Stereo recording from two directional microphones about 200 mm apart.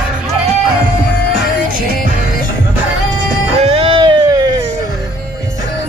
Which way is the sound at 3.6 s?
30° right (ahead or behind).